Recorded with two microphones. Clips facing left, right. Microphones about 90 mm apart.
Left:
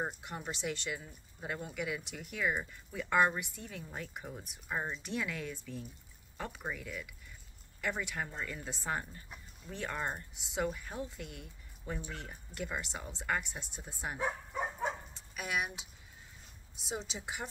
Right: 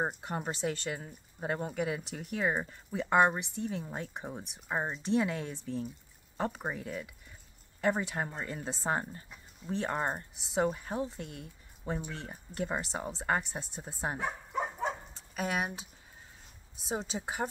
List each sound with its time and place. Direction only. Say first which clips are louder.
0.0 s speech: right 5 dB; 40° right (ahead or behind)
15.1 s speech: right 4 dB; 35° right (ahead or behind)